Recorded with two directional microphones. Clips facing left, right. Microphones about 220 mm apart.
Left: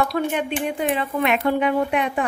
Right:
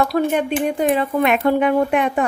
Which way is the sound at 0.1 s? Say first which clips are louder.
Right 5 dB; 40° right (ahead or behind).